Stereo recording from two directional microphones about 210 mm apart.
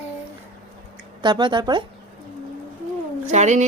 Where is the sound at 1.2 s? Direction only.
20° right (ahead or behind).